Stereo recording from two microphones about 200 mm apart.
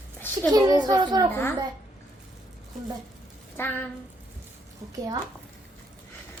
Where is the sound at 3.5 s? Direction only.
10° left (ahead or behind).